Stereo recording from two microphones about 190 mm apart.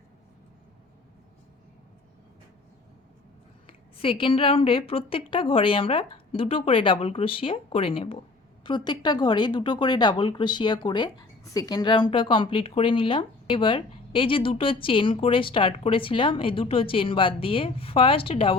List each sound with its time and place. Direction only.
3.7 s speech: 30° left (ahead or behind)